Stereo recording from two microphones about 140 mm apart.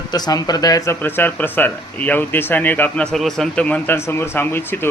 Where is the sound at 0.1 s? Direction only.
30° left (ahead or behind).